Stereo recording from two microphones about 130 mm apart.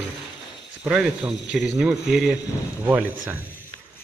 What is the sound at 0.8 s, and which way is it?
Speech, 5° right (ahead or behind).